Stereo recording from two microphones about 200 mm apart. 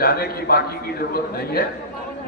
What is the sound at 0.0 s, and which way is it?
A man's voice, 50° left (ahead or behind).